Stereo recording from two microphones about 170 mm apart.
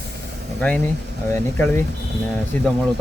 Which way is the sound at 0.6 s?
5° left (ahead or behind).